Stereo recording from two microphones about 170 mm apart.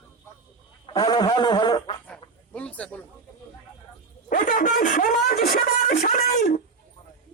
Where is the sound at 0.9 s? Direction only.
25° left (ahead or behind).